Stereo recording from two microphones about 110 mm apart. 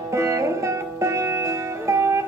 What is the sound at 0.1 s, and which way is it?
Music, 25° right (ahead or behind).